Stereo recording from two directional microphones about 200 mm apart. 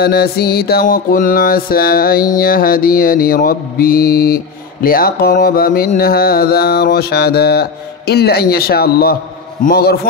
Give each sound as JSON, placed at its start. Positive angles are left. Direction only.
{"t": 0.0, "sound": "mantra", "side_deg": 50}